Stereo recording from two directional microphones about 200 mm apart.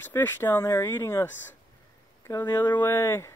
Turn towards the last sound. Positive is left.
turn(degrees=15)  # may be behind; listen again after turning